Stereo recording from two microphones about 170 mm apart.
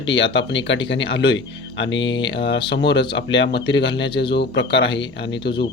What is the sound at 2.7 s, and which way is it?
Speech, 90° left.